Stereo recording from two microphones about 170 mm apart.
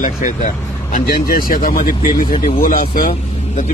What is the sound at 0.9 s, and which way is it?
Speech, 55° left (ahead or behind).